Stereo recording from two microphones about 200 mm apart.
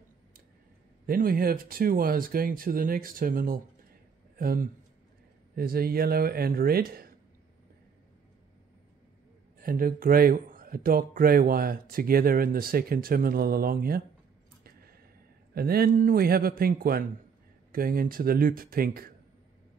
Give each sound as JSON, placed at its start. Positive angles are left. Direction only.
{"t": 1.0, "sound": "speech", "side_deg": -45}
{"t": 9.6, "sound": "speech", "side_deg": -45}
{"t": 14.6, "sound": "a sound", "side_deg": -50}
{"t": 15.5, "sound": "speech", "side_deg": -50}